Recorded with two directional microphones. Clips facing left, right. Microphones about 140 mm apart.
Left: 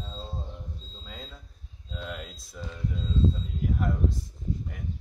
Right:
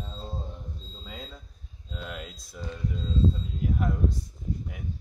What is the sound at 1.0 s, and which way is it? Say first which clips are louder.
Speech: right 3 dB; 5° right (ahead or behind).